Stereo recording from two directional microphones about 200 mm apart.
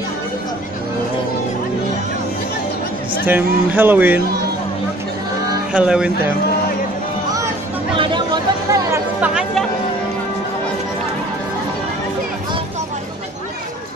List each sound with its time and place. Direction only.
3.3 s speech: 10° right (ahead or behind)
5.7 s speech: 5° right (ahead or behind)
7.9 s chatter: 25° right (ahead or behind)
9.3 s music: 5° right (ahead or behind)